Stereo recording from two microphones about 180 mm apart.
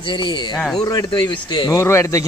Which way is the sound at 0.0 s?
25° left (ahead or behind).